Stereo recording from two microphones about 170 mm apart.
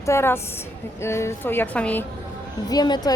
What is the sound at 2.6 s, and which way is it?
Speech, 25° left (ahead or behind).